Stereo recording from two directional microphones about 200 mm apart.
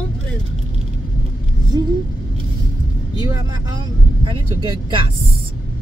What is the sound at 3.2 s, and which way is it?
Speech, 20° right (ahead or behind).